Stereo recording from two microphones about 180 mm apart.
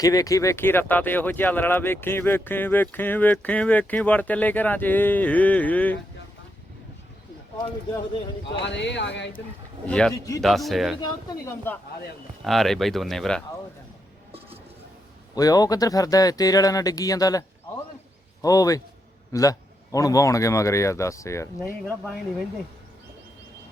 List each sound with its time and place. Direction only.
0.0 s speech: 20° left (ahead or behind)
8.6 s speech: 75° left (ahead or behind)
9.8 s speech: 5° left (ahead or behind)
10.2 s speech: 20° left (ahead or behind)
10.4 s speech: centre (ahead or behind)
11.3 s speech: 15° left (ahead or behind)
12.5 s speech: centre (ahead or behind)
15.4 s speech: 20° left (ahead or behind)
18.4 s speech: 20° left (ahead or behind)